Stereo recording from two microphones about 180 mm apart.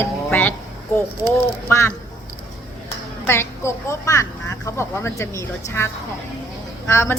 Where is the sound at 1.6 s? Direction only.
15° left (ahead or behind).